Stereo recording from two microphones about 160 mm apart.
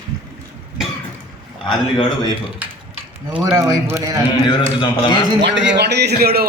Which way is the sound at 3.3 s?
10° right (ahead or behind).